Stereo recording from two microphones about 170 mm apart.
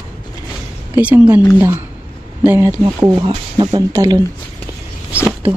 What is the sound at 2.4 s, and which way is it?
Speech, 10° right (ahead or behind).